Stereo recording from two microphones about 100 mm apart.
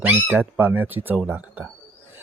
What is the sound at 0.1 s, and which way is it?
Speech, 20° right (ahead or behind).